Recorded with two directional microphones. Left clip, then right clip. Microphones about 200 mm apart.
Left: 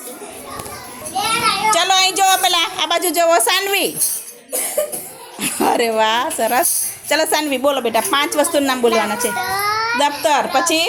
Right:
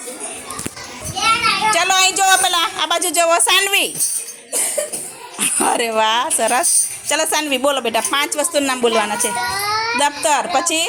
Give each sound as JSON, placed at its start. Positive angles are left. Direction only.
{"t": 1.7, "sound": "a woman's voice", "side_deg": 5}
{"t": 5.4, "sound": "a woman's voice", "side_deg": 0}